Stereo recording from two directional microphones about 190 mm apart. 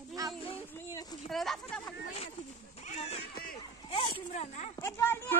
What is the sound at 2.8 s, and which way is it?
Cat, 35° left (ahead or behind).